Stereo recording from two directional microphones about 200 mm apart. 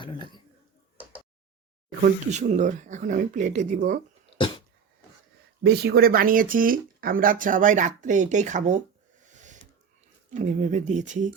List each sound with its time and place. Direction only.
0.0 s speech: 20° left (ahead or behind)
2.0 s speech: 35° right (ahead or behind)
4.4 s a sound: 25° left (ahead or behind)
5.6 s speech: 50° right (ahead or behind)
9.3 s a sound: 40° right (ahead or behind)
10.2 s speech: 40° right (ahead or behind)